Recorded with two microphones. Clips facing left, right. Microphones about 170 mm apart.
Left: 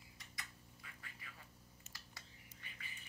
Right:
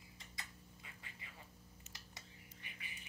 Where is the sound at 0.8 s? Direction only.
25° right (ahead or behind).